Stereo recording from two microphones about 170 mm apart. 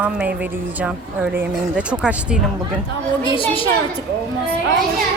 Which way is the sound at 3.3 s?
30° left (ahead or behind).